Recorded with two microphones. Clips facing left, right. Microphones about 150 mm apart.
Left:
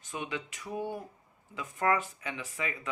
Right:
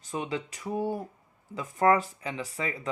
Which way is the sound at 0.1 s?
35° right (ahead or behind).